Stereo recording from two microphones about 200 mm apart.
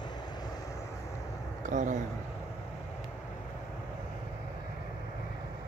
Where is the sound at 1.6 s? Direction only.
40° right (ahead or behind).